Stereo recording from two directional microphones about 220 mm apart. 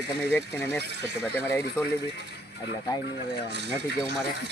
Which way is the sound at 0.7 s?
50° right (ahead or behind).